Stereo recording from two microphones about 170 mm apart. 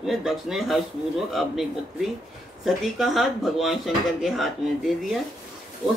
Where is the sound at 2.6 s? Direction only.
Centre (ahead or behind).